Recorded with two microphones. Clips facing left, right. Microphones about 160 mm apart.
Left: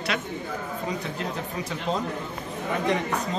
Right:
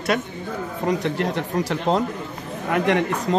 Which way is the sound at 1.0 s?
75° right (ahead or behind).